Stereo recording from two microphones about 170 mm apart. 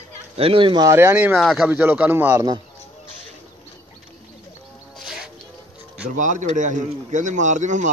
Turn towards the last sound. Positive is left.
turn(degrees=-45)  # may be behind; listen again after turning